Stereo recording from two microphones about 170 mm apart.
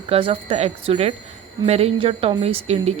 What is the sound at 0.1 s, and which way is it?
A woman's voice, 30° right (ahead or behind).